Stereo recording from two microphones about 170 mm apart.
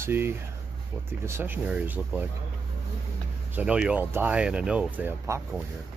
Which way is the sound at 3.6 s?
5° right (ahead or behind).